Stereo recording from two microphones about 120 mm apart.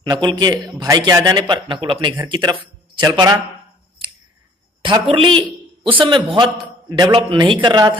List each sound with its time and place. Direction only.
0.0 s a man's voice: 35° right (ahead or behind)
5.0 s a man's voice: 45° right (ahead or behind)
7.1 s a man's voice: 50° right (ahead or behind)